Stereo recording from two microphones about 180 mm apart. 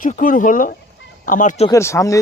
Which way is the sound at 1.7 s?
15° left (ahead or behind).